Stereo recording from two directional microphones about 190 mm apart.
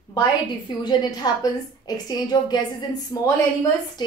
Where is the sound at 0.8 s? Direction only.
20° left (ahead or behind).